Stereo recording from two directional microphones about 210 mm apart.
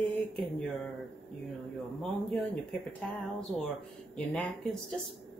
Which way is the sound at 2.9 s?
Centre (ahead or behind).